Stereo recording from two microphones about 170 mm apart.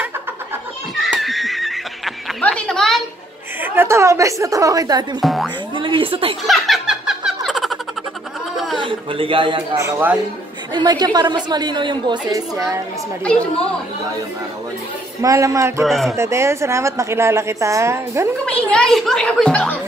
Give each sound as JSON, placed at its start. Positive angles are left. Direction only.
{"t": 0.9, "sound": "snicker", "side_deg": 0}
{"t": 3.6, "sound": "a woman's voice", "side_deg": -15}
{"t": 5.2, "sound": "speech", "side_deg": 0}
{"t": 5.8, "sound": "a man's voice", "side_deg": -30}
{"t": 6.4, "sound": "laughter", "side_deg": 0}
{"t": 8.7, "sound": "a man's voice", "side_deg": -30}
{"t": 9.8, "sound": "a woman's voice", "side_deg": -15}
{"t": 15.2, "sound": "a woman's voice", "side_deg": -20}
{"t": 15.8, "sound": "speech", "side_deg": 0}
{"t": 16.2, "sound": "a woman's voice", "side_deg": -15}
{"t": 18.4, "sound": "speech", "side_deg": 5}